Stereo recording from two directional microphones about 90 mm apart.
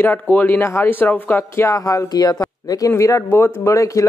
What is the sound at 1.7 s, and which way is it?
Speech, 40° left (ahead or behind).